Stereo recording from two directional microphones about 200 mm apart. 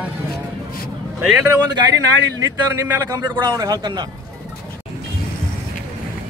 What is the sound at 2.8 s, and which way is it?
A man's voice, 15° right (ahead or behind).